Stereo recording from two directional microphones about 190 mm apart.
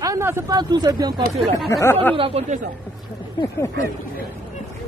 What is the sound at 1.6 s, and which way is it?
Speech, 15° left (ahead or behind).